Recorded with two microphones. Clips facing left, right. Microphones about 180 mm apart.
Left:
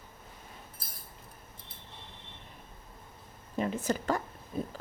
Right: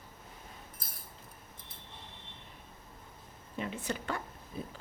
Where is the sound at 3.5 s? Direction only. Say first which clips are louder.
Left 6 dB; 40° left (ahead or behind).